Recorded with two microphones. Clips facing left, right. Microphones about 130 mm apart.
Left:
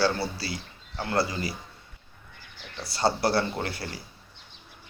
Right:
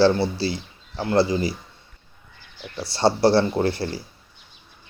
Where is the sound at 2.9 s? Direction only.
30° right (ahead or behind).